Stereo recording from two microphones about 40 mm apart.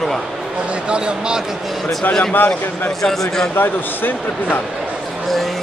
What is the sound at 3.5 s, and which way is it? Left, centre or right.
Speech, left.